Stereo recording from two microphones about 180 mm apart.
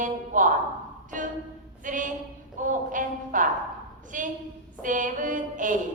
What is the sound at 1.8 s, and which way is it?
A woman's voice, 45° right (ahead or behind).